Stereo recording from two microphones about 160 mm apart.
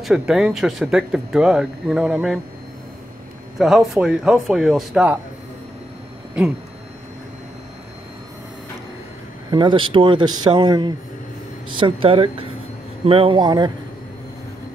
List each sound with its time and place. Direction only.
0.0 s speech: 5° right (ahead or behind)
3.5 s speech: centre (ahead or behind)
9.5 s speech: 30° right (ahead or behind)